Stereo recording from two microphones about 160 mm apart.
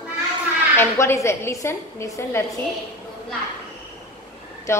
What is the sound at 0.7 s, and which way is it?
A woman's voice, 15° left (ahead or behind).